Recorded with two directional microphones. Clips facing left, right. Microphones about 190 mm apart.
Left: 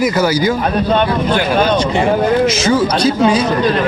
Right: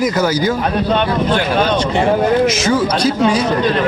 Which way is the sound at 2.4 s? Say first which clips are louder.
Left 1 dB; 30° left (ahead or behind).